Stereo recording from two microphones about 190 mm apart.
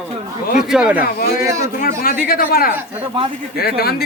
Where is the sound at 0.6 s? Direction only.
5° right (ahead or behind).